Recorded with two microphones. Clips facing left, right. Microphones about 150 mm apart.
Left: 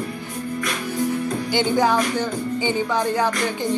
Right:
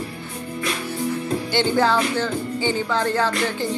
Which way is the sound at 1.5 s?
15° left (ahead or behind).